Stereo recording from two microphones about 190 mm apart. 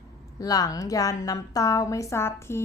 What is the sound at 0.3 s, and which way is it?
A woman's voice, 20° left (ahead or behind).